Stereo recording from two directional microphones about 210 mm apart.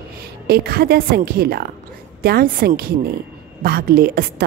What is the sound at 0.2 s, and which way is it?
A woman's voice, 45° right (ahead or behind).